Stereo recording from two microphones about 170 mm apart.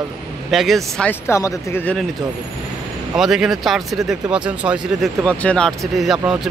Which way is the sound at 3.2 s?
5° right (ahead or behind).